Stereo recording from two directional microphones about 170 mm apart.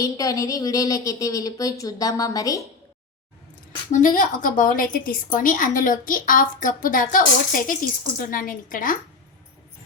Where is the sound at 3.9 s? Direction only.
50° left (ahead or behind).